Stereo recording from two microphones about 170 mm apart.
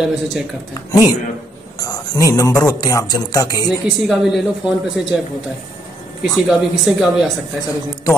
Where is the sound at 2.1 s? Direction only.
20° left (ahead or behind).